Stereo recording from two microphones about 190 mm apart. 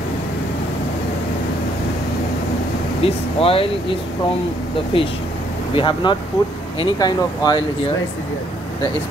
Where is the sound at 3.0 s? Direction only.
30° left (ahead or behind).